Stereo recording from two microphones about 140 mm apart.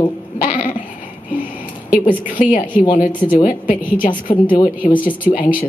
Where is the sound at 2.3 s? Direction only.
65° left (ahead or behind).